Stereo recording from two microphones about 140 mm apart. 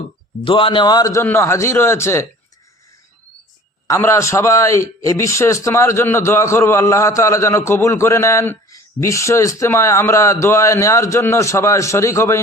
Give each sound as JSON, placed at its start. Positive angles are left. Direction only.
{"t": 0.4, "sound": "a man's voice", "side_deg": 40}
{"t": 3.8, "sound": "a man's voice", "side_deg": 20}